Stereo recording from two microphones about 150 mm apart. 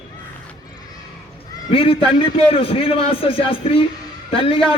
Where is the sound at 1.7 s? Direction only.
35° left (ahead or behind).